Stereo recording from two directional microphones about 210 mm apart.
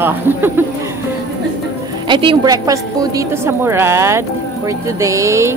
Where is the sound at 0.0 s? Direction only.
10° right (ahead or behind).